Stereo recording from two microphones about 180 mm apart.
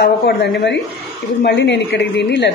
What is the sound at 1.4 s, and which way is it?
A woman's voice, 75° left (ahead or behind).